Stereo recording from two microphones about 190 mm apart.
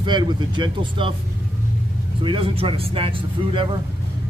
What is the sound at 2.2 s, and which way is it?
Speech, 30° right (ahead or behind).